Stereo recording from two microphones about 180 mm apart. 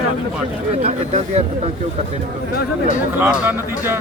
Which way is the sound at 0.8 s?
40° right (ahead or behind).